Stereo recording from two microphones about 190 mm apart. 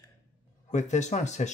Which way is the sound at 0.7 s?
40° left (ahead or behind).